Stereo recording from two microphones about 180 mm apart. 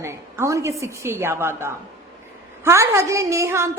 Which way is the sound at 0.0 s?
15° right (ahead or behind).